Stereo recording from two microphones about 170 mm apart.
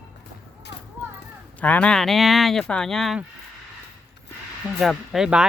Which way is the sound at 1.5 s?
10° left (ahead or behind).